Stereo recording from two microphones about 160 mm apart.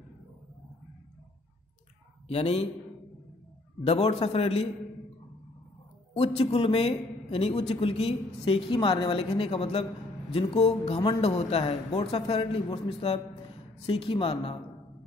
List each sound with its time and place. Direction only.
2.2 s a man's voice: 40° left (ahead or behind)
3.8 s a man's voice: 40° left (ahead or behind)
6.1 s a man's voice: 40° left (ahead or behind)